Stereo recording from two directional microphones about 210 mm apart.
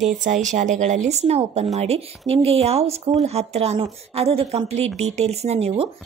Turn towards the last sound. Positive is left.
turn(degrees=-30)  # may be behind; listen again after turning